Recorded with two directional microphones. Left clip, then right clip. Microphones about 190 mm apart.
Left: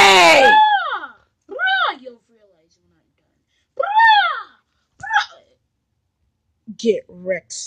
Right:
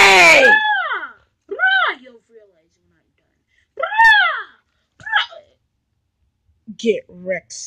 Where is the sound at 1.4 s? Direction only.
50° left (ahead or behind).